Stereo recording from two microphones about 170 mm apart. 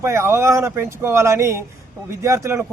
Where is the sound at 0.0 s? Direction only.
15° right (ahead or behind).